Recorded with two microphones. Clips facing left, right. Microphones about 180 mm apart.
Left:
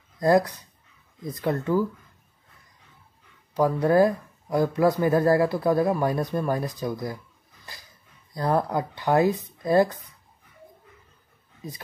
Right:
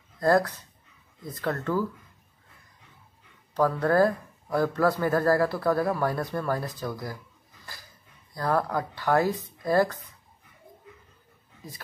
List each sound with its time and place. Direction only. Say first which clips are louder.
0.2 s a man's voice: left 2 dB; 15° left (ahead or behind)
3.5 s a man's voice: left 3 dB; 15° left (ahead or behind)
8.4 s speech: left 2 dB; 20° left (ahead or behind)